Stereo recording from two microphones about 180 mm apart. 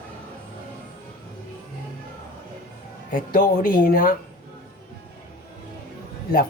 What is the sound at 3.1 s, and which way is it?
Speech, 50° left (ahead or behind).